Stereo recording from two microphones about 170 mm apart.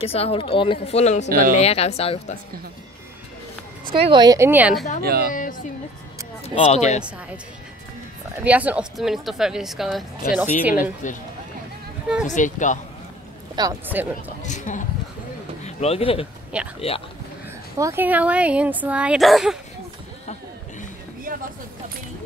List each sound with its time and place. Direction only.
0.0 s speech: 35° left (ahead or behind)
3.9 s speech: 30° right (ahead or behind); by 4.7 s 10° right (ahead or behind)
5.0 s speech: 65° right (ahead or behind)
5.3 s speech: 50° left (ahead or behind)
6.4 s speech: 40° left (ahead or behind)
8.5 s speech: 10° right (ahead or behind)
10.7 s speech: 50° left (ahead or behind)
12.3 s speech: 50° left (ahead or behind)
13.6 s speech: 25° right (ahead or behind)
14.0 s speech: 10° right (ahead or behind)
14.4 s speech: 45° left (ahead or behind)
16.5 s speech: 5° right (ahead or behind)
17.7 s speech: 15° right (ahead or behind)